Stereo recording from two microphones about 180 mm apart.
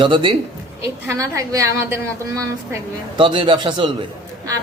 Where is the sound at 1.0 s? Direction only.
15° right (ahead or behind).